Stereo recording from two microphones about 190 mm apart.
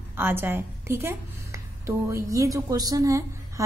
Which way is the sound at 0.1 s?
10° right (ahead or behind).